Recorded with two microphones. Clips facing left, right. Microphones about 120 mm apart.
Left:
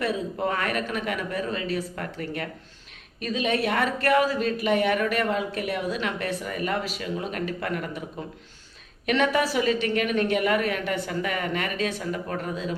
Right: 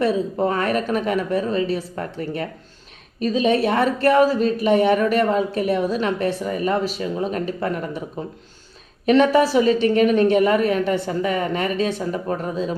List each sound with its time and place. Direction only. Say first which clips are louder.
0.0 s a woman's voice: right 7 dB; 35° right (ahead or behind)
9.0 s a woman's voice: right 8 dB; 35° right (ahead or behind)